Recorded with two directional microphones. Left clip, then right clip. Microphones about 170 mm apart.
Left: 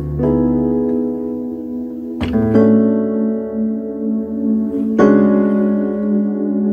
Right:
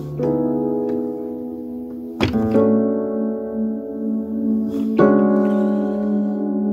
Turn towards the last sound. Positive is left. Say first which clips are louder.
# left 3 dB
turn(degrees=20)  # may be behind; listen again after turning